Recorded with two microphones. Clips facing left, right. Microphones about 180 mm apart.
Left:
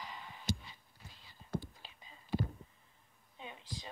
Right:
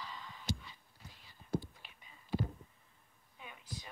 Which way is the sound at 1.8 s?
30° left (ahead or behind).